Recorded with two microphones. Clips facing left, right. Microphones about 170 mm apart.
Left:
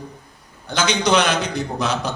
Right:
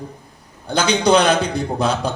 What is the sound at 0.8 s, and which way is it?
A man's voice, 30° right (ahead or behind).